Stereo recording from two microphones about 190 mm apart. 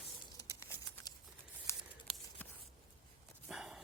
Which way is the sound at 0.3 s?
15° left (ahead or behind).